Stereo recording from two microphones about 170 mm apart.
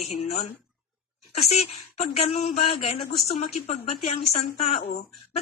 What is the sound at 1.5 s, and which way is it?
Speech, 40° left (ahead or behind).